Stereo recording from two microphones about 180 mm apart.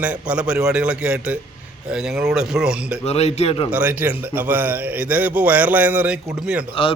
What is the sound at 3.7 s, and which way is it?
A man's voice, 10° right (ahead or behind).